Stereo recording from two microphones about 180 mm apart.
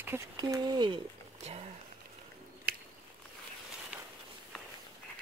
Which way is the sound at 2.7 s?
55° right (ahead or behind).